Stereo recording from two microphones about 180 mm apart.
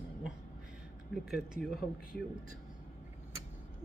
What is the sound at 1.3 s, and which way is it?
Speech, centre (ahead or behind).